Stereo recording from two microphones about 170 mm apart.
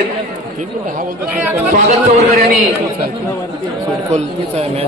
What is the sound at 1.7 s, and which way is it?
Speech, 45° right (ahead or behind).